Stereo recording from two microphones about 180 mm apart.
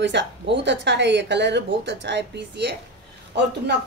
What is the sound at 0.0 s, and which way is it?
Speech, 80° right.